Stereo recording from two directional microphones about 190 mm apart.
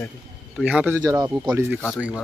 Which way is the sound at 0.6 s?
10° right (ahead or behind).